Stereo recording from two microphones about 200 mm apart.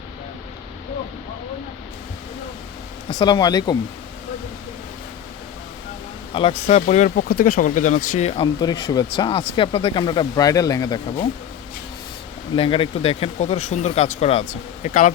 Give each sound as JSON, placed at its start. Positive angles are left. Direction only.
{"t": 3.1, "sound": "speech", "side_deg": 20}
{"t": 6.5, "sound": "speech", "side_deg": 40}
{"t": 12.5, "sound": "speech", "side_deg": 25}